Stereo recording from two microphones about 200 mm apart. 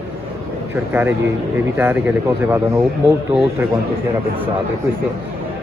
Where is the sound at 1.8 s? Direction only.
10° right (ahead or behind).